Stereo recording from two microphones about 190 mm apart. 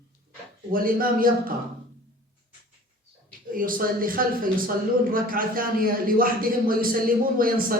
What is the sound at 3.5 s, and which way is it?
Speech, 45° right (ahead or behind).